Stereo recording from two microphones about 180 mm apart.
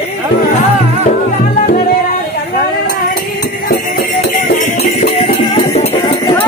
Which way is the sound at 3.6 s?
60° left (ahead or behind).